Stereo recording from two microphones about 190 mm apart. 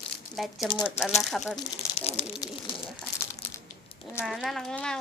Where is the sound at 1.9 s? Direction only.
35° left (ahead or behind).